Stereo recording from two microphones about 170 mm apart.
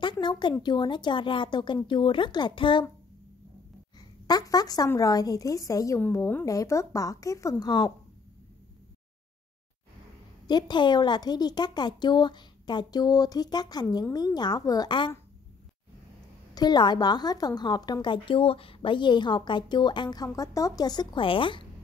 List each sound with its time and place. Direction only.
0.0 s a woman's voice: 25° left (ahead or behind)
4.3 s a woman's voice: 20° left (ahead or behind)
10.4 s a woman's voice: 25° left (ahead or behind)
16.5 s a woman's voice: 25° left (ahead or behind)